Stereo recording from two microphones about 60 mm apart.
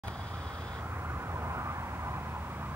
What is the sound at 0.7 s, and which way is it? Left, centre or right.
Vehicle, right.